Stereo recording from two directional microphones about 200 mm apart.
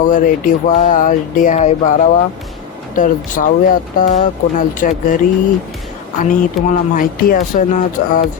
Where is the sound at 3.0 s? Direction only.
40° left (ahead or behind).